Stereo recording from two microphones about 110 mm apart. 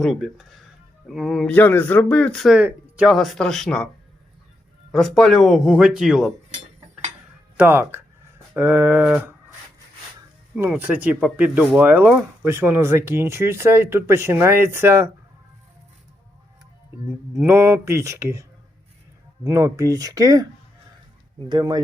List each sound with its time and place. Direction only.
0.0 s speech: centre (ahead or behind)
1.5 s speech: 15° left (ahead or behind)
2.5 s speech: 10° right (ahead or behind)
3.1 s speech: centre (ahead or behind)
4.9 s speech: 5° left (ahead or behind)
7.5 s speech: 15° right (ahead or behind)
10.7 s speech: 15° right (ahead or behind)
17.4 s speech: 25° right (ahead or behind)
19.5 s speech: 30° right (ahead or behind)
21.5 s speech: 40° right (ahead or behind)